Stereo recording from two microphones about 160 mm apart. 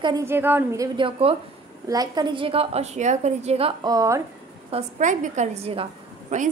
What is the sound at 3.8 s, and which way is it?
Speech, 20° right (ahead or behind).